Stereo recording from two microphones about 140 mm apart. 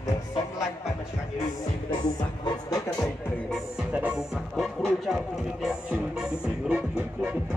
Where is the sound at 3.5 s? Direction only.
5° right (ahead or behind).